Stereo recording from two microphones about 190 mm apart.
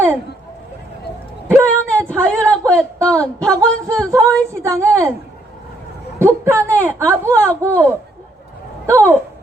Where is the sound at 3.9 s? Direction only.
15° right (ahead or behind).